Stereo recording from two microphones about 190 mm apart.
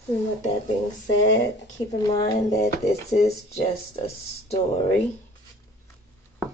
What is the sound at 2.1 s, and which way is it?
Speech, 20° left (ahead or behind).